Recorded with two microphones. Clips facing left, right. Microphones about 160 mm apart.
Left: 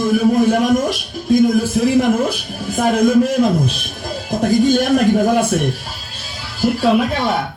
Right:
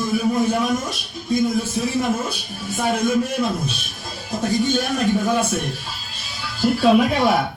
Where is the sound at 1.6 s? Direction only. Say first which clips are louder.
Left 8 dB; 90° left.